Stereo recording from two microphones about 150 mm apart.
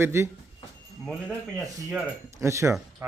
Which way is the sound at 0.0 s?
15° right (ahead or behind).